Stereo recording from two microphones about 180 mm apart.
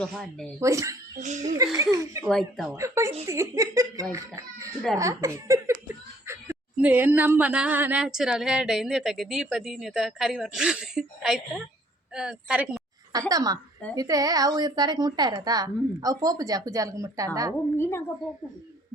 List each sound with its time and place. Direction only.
0.0 s a woman's voice: 5° left (ahead or behind)
0.6 s a woman's voice: 15° right (ahead or behind)
2.2 s a woman's voice: centre (ahead or behind)
2.7 s a woman's voice: 15° right (ahead or behind)
13.1 s a woman's voice: 20° right (ahead or behind)
17.7 s a woman's voice: 15° left (ahead or behind)